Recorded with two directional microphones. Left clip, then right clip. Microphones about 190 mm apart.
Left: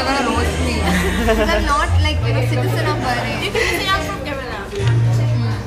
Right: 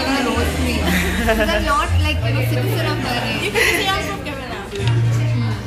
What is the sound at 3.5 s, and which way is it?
Chatter, centre (ahead or behind).